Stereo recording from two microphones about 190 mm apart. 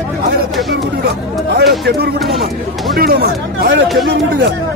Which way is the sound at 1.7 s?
60° right (ahead or behind).